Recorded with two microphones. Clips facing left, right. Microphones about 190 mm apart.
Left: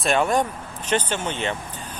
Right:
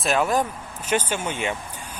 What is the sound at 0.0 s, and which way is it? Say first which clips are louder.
Speech: left 1 dB; centre (ahead or behind).